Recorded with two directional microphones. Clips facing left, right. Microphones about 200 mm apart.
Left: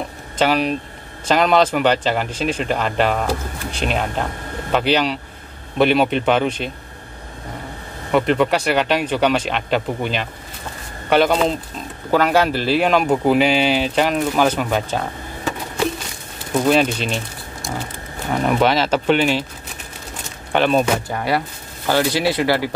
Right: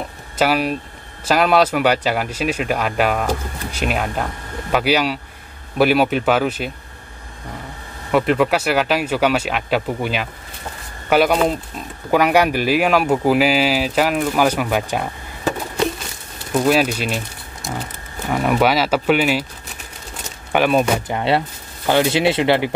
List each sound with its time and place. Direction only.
0.4 s speech: 5° right (ahead or behind)
8.1 s speech: 5° right (ahead or behind)
16.5 s speech: 5° right (ahead or behind)
18.3 s speech: 5° right (ahead or behind)
20.5 s speech: 10° right (ahead or behind)
21.1 s speech: 25° right (ahead or behind)